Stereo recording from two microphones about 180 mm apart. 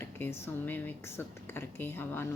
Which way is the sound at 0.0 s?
15° left (ahead or behind).